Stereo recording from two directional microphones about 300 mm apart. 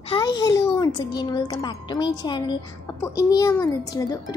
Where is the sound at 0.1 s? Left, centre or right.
Centre.